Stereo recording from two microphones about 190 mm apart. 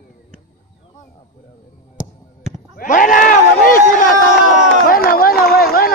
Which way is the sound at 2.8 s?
45° left (ahead or behind).